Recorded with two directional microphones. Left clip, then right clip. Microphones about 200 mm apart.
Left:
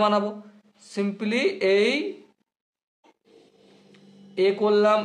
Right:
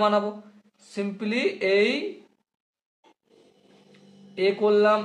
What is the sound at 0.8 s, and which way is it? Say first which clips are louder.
Speech: left 2 dB; 25° left (ahead or behind).